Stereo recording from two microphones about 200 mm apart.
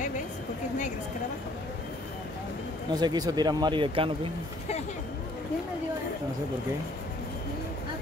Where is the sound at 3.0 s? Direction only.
20° right (ahead or behind).